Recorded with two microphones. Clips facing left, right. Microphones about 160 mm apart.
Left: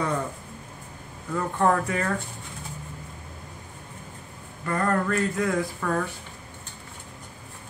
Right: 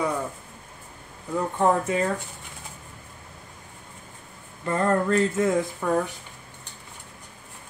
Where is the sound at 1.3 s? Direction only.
20° right (ahead or behind).